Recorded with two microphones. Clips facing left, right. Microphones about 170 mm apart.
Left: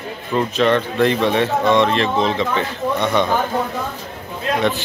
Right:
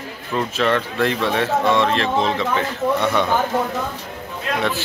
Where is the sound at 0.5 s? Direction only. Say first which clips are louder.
Left 4 dB; centre (ahead or behind).